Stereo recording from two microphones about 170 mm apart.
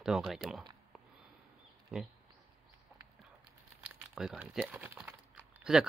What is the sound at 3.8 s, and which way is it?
Speech, 5° right (ahead or behind).